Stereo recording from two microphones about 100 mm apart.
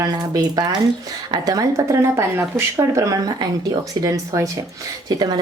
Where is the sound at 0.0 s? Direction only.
40° right (ahead or behind).